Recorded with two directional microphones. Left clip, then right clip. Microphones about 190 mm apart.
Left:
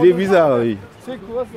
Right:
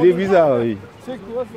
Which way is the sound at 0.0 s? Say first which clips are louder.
Left 1 dB; 20° left (ahead or behind).